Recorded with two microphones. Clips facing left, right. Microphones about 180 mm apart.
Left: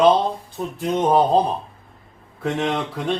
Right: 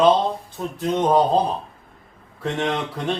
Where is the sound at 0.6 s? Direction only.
15° left (ahead or behind).